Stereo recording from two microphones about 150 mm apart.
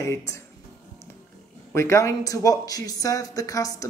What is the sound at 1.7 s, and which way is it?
Speech, 20° left (ahead or behind).